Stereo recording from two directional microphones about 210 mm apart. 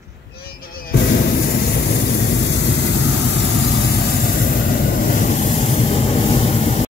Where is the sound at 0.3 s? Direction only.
45° left (ahead or behind).